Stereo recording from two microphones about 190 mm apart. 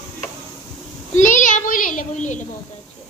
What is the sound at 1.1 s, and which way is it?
A child's voice, 40° left (ahead or behind).